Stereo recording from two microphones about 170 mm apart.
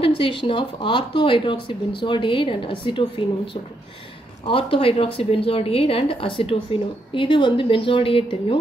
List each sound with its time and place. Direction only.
0.0 s speech: 30° left (ahead or behind)
4.5 s a woman's voice: 30° left (ahead or behind)